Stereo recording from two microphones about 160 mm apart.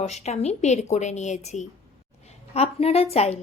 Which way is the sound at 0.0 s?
45° left (ahead or behind).